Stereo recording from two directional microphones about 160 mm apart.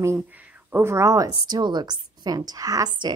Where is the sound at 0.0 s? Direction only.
15° right (ahead or behind).